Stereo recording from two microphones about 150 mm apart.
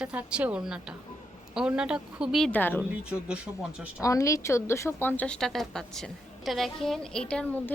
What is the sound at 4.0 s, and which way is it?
Speech, 20° left (ahead or behind).